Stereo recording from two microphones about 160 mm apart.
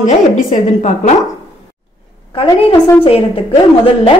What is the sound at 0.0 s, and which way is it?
A woman's voice, 50° left (ahead or behind).